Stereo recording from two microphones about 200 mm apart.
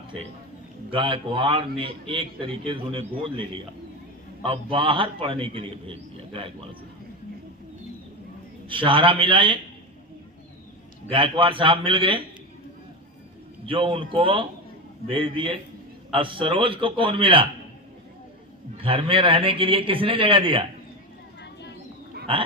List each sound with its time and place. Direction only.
0.9 s a man's voice: 25° right (ahead or behind)
8.6 s a man's voice: 25° right (ahead or behind)
11.1 s a man's voice: 25° right (ahead or behind)
13.7 s a man's voice: 25° right (ahead or behind)
18.8 s a man's voice: 25° right (ahead or behind)
22.3 s a man's voice: 25° right (ahead or behind)